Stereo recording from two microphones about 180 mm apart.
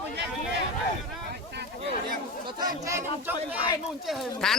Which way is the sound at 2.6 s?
15° right (ahead or behind).